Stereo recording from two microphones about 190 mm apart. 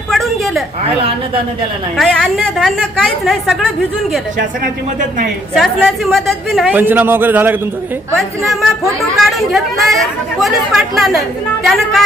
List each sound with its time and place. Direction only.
0.1 s a sound: centre (ahead or behind)
2.0 s a woman's voice: centre (ahead or behind)
4.4 s speech: 45° right (ahead or behind)
5.5 s a man's voice: centre (ahead or behind)
8.1 s a woman's voice: centre (ahead or behind)